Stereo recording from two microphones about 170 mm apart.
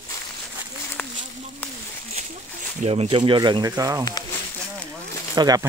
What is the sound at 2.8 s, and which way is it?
Speech, 35° right (ahead or behind).